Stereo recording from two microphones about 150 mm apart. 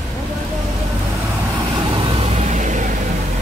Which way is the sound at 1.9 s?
40° right (ahead or behind).